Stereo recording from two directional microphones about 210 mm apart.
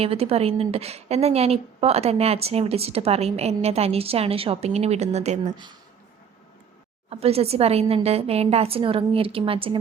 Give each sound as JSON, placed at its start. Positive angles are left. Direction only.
{"t": 0.0, "sound": "a woman's voice", "side_deg": -30}
{"t": 7.1, "sound": "a woman's voice", "side_deg": -30}